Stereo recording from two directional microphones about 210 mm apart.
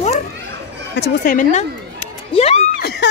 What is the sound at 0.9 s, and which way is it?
Speech, 50° left (ahead or behind).